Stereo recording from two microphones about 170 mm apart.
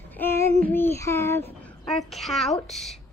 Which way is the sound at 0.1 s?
10° left (ahead or behind).